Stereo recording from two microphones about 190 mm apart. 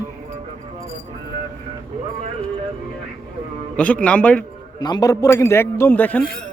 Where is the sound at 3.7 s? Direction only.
5° left (ahead or behind).